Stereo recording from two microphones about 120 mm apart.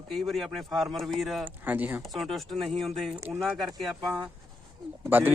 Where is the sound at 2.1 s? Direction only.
Centre (ahead or behind).